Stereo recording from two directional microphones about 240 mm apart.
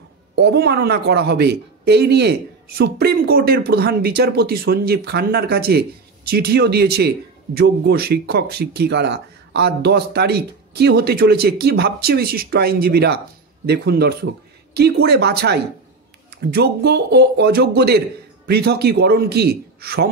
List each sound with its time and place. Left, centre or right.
0.4 s a man's voice: right